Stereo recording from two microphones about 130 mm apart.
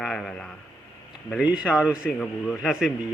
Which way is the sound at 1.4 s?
10° right (ahead or behind).